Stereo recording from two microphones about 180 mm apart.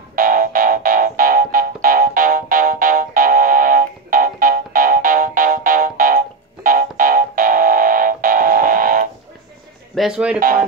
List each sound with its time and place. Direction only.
0.1 s music: 50° right (ahead or behind)
9.9 s speech: 5° right (ahead or behind)